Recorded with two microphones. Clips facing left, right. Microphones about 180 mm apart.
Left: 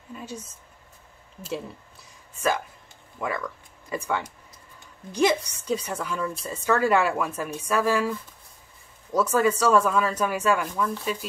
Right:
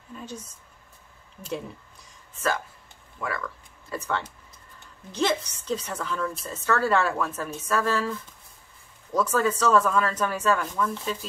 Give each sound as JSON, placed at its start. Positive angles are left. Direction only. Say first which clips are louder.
{"t": 0.1, "sound": "speech", "louder": "left 1 dB", "side_deg": 10}
{"t": 3.2, "sound": "a woman's voice", "louder": "left 2 dB", "side_deg": 20}
{"t": 9.1, "sound": "a woman's voice", "louder": "left 2 dB", "side_deg": 10}